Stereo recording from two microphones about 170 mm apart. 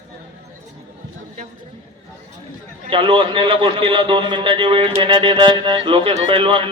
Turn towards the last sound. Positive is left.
turn(degrees=-30)  # may be behind; listen again after turning